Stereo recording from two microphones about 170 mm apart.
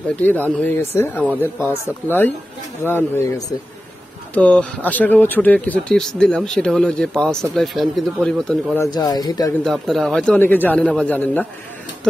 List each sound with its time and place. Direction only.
0.1 s speech: 10° left (ahead or behind)
4.3 s speech: 5° left (ahead or behind)
8.7 s speech: 20° left (ahead or behind)
9.7 s speech: centre (ahead or behind)